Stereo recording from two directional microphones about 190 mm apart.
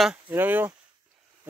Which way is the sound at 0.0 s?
10° right (ahead or behind).